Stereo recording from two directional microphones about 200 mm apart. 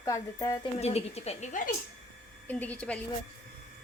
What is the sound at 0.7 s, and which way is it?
Speech, 30° left (ahead or behind).